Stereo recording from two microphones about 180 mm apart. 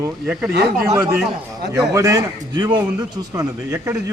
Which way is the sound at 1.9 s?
15° right (ahead or behind).